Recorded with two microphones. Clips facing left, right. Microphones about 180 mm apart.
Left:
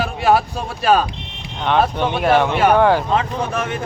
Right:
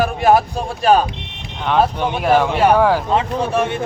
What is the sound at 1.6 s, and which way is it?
Speech, 5° right (ahead or behind).